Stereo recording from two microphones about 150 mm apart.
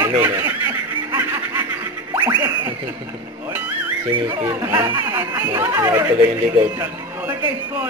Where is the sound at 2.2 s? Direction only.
10° right (ahead or behind).